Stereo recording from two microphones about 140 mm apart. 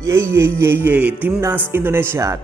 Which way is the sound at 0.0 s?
20° right (ahead or behind).